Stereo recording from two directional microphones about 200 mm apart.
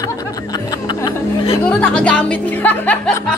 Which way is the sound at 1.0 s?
20° left (ahead or behind).